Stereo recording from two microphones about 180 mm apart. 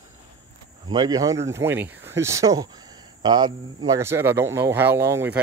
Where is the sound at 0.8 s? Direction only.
25° right (ahead or behind).